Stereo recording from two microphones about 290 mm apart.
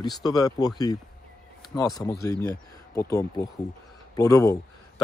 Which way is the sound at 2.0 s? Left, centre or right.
Centre.